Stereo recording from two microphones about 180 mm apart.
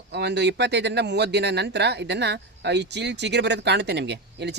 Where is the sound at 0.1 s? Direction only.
70° right (ahead or behind).